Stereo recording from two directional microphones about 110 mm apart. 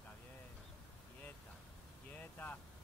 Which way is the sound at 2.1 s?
15° left (ahead or behind).